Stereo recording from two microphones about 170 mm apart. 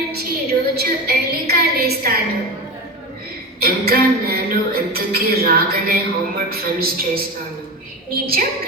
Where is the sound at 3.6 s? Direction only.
65° right (ahead or behind).